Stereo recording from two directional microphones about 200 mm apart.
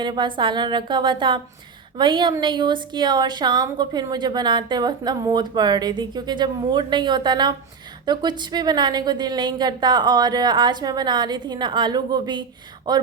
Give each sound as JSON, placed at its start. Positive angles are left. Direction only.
{"t": 0.0, "sound": "a woman's voice", "side_deg": -25}